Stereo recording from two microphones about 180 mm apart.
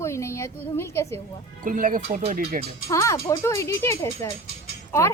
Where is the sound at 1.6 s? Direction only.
50° right (ahead or behind).